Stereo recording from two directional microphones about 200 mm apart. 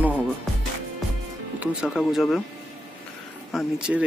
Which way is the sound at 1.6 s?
5° right (ahead or behind).